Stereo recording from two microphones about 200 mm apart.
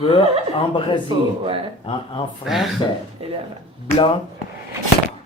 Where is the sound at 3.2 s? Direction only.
30° right (ahead or behind).